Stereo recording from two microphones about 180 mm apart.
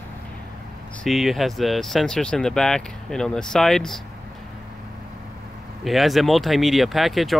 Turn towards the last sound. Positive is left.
turn(degrees=0)  # may be behind; listen again after turning